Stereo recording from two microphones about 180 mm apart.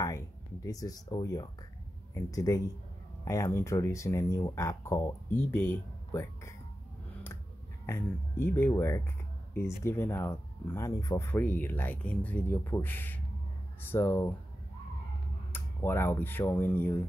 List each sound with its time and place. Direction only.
0.7 s speech: 20° left (ahead or behind)
7.8 s speech: 15° left (ahead or behind)
15.5 s speech: 10° left (ahead or behind)